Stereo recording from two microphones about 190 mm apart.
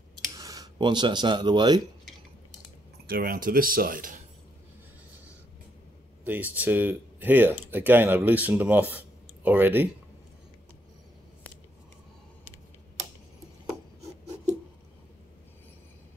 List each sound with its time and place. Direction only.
0.4 s speech: 20° right (ahead or behind)
3.1 s speech: 50° right (ahead or behind)
6.2 s speech: 10° right (ahead or behind)